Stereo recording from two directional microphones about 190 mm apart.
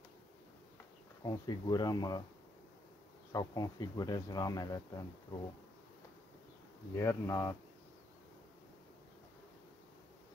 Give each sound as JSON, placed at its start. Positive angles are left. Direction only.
{"t": 1.2, "sound": "speech", "side_deg": 20}
{"t": 3.3, "sound": "speech", "side_deg": 20}
{"t": 7.0, "sound": "speech", "side_deg": 15}